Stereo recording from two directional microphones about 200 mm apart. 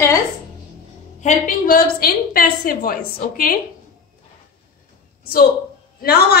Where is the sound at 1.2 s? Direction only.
45° left (ahead or behind).